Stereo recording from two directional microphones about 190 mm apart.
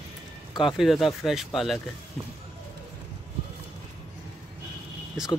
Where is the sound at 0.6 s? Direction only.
Centre (ahead or behind).